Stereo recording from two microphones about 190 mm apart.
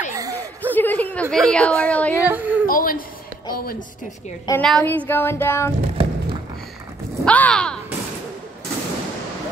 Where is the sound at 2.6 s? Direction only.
50° left (ahead or behind).